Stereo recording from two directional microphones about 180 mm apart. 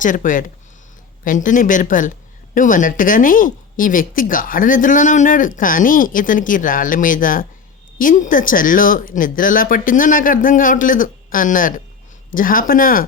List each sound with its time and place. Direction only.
0.0 s speech: 45° left (ahead or behind)